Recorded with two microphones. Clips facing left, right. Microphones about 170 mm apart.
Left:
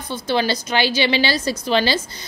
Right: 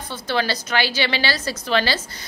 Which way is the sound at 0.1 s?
15° left (ahead or behind).